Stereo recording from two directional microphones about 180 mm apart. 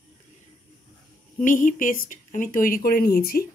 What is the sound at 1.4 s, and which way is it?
Speech, 45° left (ahead or behind).